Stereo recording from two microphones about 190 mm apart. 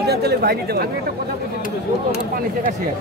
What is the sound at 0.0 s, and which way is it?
Speech, 60° right (ahead or behind).